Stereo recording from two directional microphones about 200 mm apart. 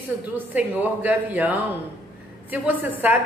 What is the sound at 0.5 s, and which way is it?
A man's voice, 10° right (ahead or behind).